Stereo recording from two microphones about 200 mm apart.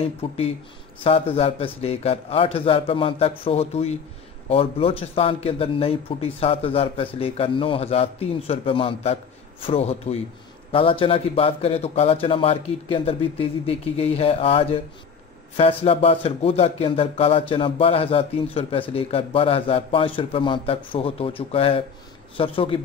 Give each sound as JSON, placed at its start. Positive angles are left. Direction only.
{"t": 0.0, "sound": "speech", "side_deg": 30}